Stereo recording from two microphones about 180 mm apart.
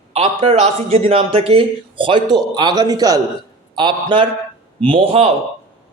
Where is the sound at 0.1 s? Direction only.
35° right (ahead or behind).